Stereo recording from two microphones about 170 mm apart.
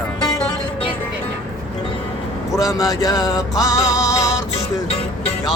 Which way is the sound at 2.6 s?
20° left (ahead or behind).